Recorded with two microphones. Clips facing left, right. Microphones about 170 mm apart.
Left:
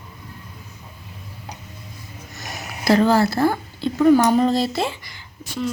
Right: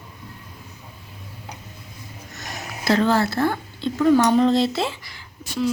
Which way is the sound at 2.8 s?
5° left (ahead or behind).